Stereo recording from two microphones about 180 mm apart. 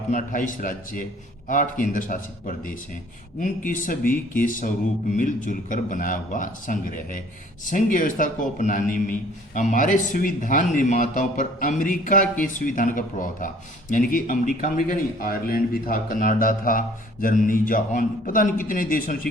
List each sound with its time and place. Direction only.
0.1 s a man's voice: 45° left (ahead or behind)